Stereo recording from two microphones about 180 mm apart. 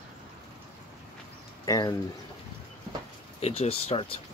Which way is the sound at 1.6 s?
20° left (ahead or behind).